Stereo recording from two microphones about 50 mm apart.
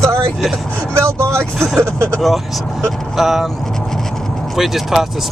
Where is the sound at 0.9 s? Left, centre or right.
Right.